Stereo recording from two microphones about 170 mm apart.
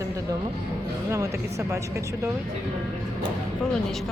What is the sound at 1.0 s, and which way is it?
Speech, 20° right (ahead or behind).